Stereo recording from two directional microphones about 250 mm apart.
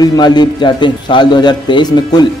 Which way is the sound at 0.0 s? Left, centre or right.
Centre.